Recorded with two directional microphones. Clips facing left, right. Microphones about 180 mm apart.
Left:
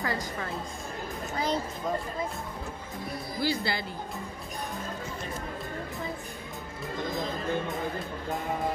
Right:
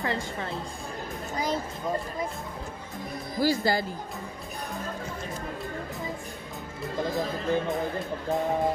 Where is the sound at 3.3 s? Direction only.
45° right (ahead or behind).